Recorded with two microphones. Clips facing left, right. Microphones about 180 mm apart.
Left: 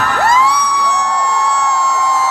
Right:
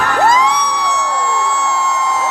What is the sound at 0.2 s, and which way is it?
Music, 20° right (ahead or behind).